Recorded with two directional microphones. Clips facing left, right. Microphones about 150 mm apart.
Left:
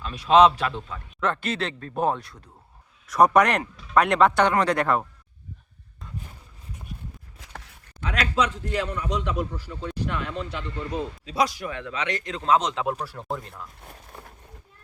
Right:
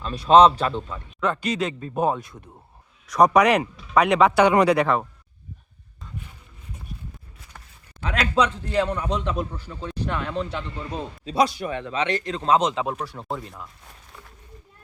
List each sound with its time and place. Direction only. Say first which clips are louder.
0.0 s a man's voice: right 2 dB; 35° right (ahead or behind)
1.2 s speech: right 2 dB; centre (ahead or behind)
8.0 s a man's voice: right 3 dB; 30° right (ahead or behind)
12.7 s speech: even; centre (ahead or behind)
13.8 s walk: left 3 dB; 50° left (ahead or behind)